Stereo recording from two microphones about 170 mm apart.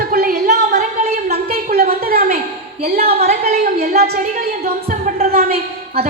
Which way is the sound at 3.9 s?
65° right (ahead or behind).